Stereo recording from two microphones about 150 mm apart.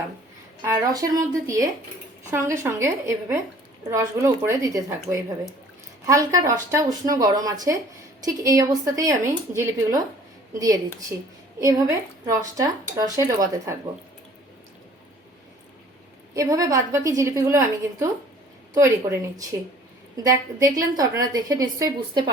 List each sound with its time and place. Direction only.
0.6 s a woman's voice: 25° right (ahead or behind)
16.3 s a woman's voice: 25° right (ahead or behind)